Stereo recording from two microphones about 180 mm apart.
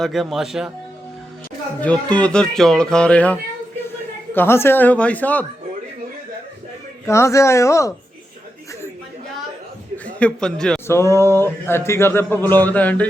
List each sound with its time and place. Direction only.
0.0 s speech: centre (ahead or behind)
1.8 s speech: 5° left (ahead or behind)
4.4 s speech: 15° left (ahead or behind)
7.1 s speech: 15° left (ahead or behind)
10.1 s a man's voice: 5° left (ahead or behind)
10.9 s speech: 15° left (ahead or behind)